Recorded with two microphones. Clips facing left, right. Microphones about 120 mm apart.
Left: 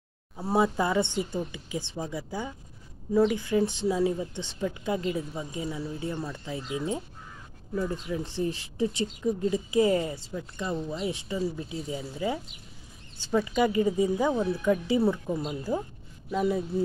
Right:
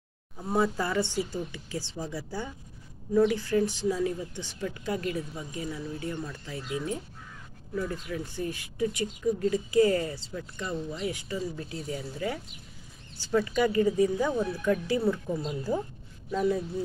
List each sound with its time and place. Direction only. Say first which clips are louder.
0.6 s speech: left 2 dB; 20° left (ahead or behind)
15.4 s speech: even; 10° left (ahead or behind)